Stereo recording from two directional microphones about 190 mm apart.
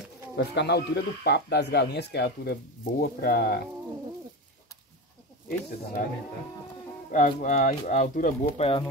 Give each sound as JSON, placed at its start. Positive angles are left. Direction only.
{"t": 0.4, "sound": "speech", "side_deg": 60}
{"t": 6.0, "sound": "speech", "side_deg": 45}